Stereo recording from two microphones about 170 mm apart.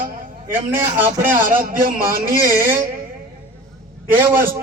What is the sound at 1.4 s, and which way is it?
Speech, 55° right (ahead or behind).